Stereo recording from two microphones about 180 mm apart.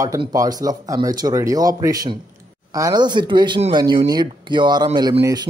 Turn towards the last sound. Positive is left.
turn(degrees=-20)  # may be behind; listen again after turning